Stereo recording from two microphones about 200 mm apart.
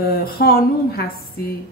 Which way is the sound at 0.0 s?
50° left (ahead or behind).